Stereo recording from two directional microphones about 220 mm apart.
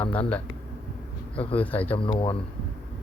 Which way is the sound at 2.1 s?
25° left (ahead or behind).